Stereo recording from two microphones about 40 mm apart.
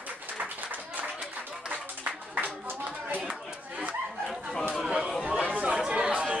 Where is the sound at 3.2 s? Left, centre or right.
Right.